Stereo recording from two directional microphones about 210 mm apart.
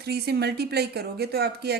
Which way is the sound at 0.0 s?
50° right (ahead or behind).